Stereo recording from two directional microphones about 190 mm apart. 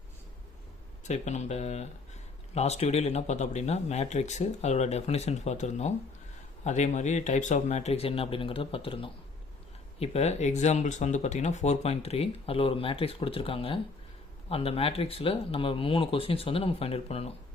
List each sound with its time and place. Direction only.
1.0 s speech: 40° left (ahead or behind)